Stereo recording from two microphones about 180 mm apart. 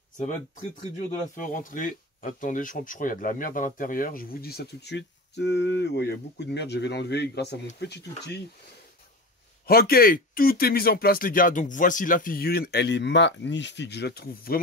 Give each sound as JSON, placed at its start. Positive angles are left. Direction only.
{"t": 0.9, "sound": "speech", "side_deg": 45}
{"t": 9.7, "sound": "speech", "side_deg": 55}